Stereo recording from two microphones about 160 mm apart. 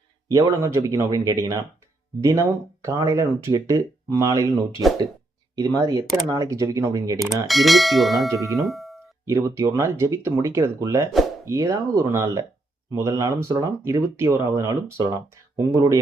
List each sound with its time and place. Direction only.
0.3 s speech: 20° right (ahead or behind)
5.5 s speech: 25° right (ahead or behind)
7.4 s speech: centre (ahead or behind)
8.3 s speech: 20° right (ahead or behind)
8.5 s doorbell: centre (ahead or behind)
9.2 s speech: 20° right (ahead or behind)